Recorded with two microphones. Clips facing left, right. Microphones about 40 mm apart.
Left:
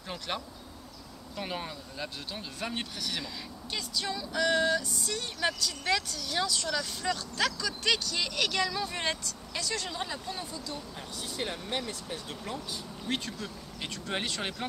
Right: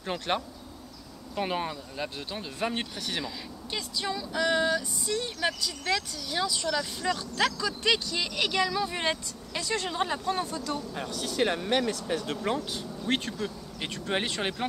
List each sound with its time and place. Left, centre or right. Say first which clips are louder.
0.0 s speech: right 6 dB; right
9.6 s speech: right 5 dB; right
10.2 s speech: right 8 dB; right
11.9 s speech: right 8 dB; right
12.4 s speech: right 7 dB; right
13.0 s speech: right 5 dB; right